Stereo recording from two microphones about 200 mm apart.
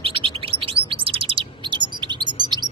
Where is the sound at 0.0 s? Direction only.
25° right (ahead or behind).